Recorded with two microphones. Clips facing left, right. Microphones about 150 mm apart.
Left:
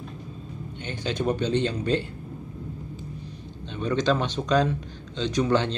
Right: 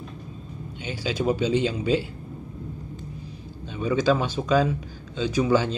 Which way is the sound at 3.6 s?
5° right (ahead or behind).